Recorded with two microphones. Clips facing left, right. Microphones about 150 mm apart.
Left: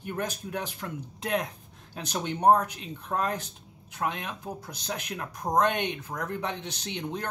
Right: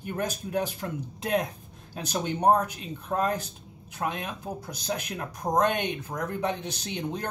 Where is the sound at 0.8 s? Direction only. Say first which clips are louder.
Right 3 dB; 40° right (ahead or behind).